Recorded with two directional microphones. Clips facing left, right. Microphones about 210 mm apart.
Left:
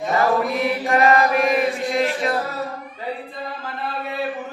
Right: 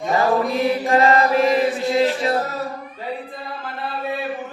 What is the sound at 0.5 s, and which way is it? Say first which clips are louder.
Chant: right 2 dB; 30° right (ahead or behind).